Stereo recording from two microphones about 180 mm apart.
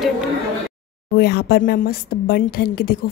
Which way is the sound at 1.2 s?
65° left (ahead or behind).